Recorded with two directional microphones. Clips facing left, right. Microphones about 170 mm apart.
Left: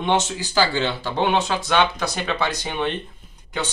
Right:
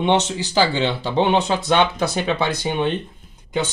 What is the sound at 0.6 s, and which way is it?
Speech, 20° right (ahead or behind).